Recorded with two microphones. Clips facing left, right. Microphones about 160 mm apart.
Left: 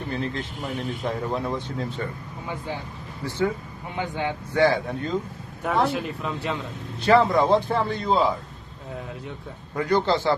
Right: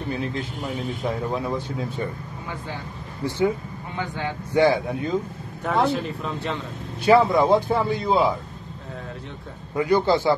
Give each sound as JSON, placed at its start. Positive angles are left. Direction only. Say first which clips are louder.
{"t": 0.1, "sound": "speech", "louder": "right 1 dB", "side_deg": -5}
{"t": 3.3, "sound": "a man's voice", "louder": "right 3 dB", "side_deg": -20}
{"t": 3.9, "sound": "speech", "louder": "left 2 dB", "side_deg": 20}
{"t": 4.6, "sound": "a man's voice", "louder": "right 2 dB", "side_deg": -15}
{"t": 5.6, "sound": "speech", "louder": "right 1 dB", "side_deg": 5}
{"t": 7.1, "sound": "a man's voice", "louder": "right 2 dB", "side_deg": -5}
{"t": 9.8, "sound": "a man's voice", "louder": "right 2 dB", "side_deg": -10}